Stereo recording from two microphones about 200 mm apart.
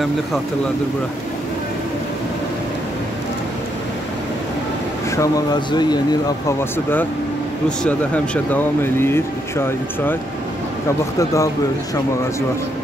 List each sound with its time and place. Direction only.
5.1 s speech: 15° left (ahead or behind)
7.6 s speech: 5° left (ahead or behind)
11.1 s speech: 15° left (ahead or behind)